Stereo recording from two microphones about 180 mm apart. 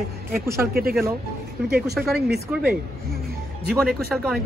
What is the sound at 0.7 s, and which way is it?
Speech, 55° right (ahead or behind).